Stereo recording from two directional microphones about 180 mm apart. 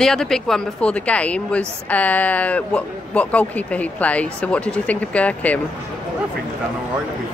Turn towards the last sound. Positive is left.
turn(degrees=10)  # may be behind; listen again after turning